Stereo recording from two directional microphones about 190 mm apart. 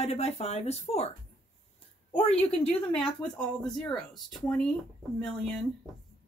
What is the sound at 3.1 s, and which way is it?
Speech, 5° left (ahead or behind).